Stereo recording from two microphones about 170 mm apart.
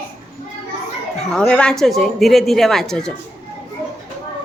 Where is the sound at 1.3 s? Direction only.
5° left (ahead or behind).